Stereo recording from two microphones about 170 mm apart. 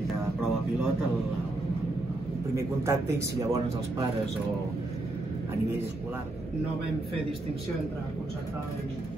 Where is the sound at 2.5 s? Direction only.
15° right (ahead or behind).